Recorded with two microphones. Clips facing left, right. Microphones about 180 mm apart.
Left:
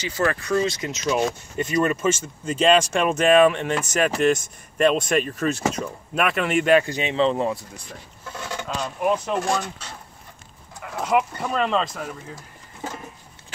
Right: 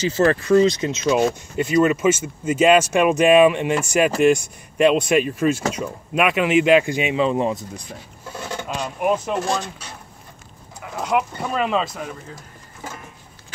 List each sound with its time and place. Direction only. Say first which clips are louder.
0.2 s speech: right 7 dB; 30° right (ahead or behind)
1.0 s speech: right 4 dB; 10° right (ahead or behind)
10.8 s speech: even; centre (ahead or behind)